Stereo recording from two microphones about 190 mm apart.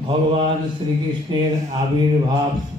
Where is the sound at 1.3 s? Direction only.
25° right (ahead or behind).